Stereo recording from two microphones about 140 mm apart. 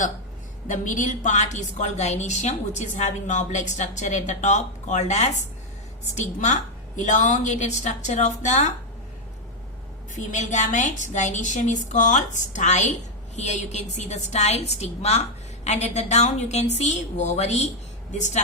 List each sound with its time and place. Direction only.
0.7 s a woman's voice: 65° left (ahead or behind)
10.2 s a woman's voice: 60° left (ahead or behind)